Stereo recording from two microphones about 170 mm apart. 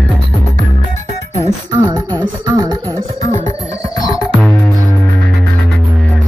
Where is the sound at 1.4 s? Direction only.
25° right (ahead or behind).